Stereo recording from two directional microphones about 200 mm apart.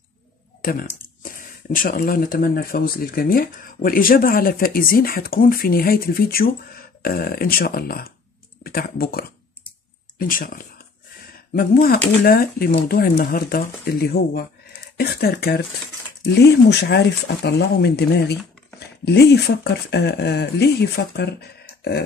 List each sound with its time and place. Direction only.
0.6 s speech: 45° left (ahead or behind)
19.0 s speech: 55° left (ahead or behind)